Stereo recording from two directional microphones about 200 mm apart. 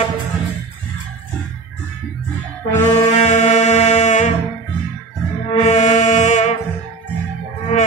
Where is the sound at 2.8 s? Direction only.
35° left (ahead or behind).